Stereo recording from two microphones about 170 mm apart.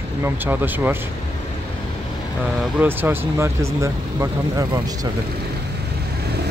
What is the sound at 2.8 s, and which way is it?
Speech, 10° right (ahead or behind).